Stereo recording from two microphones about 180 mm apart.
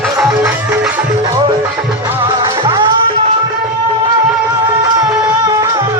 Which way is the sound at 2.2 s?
25° right (ahead or behind).